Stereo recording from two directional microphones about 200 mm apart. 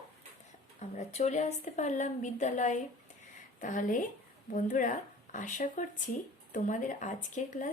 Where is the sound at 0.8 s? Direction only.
35° left (ahead or behind).